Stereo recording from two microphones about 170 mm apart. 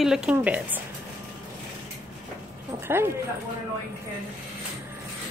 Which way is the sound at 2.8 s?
15° right (ahead or behind).